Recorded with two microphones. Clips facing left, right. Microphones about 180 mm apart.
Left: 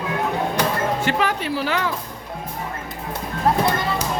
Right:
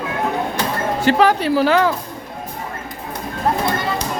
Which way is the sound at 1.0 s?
35° right (ahead or behind).